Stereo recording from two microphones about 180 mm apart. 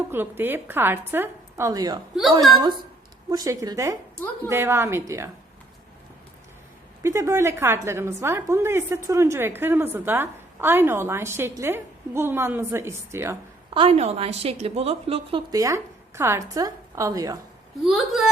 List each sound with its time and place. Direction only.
0.1 s a woman's voice: 10° right (ahead or behind)
3.2 s a woman's voice: 20° right (ahead or behind)
7.0 s a woman's voice: 15° right (ahead or behind)
13.7 s a woman's voice: 35° right (ahead or behind); by 17.4 s 20° right (ahead or behind)
17.8 s speech: centre (ahead or behind)